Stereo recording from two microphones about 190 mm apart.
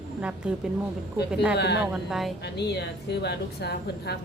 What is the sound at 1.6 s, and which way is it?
Speech, 60° left (ahead or behind).